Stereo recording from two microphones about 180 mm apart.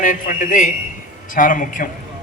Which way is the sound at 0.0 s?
45° left (ahead or behind).